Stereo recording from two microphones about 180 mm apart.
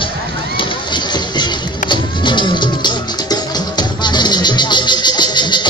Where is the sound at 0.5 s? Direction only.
25° left (ahead or behind).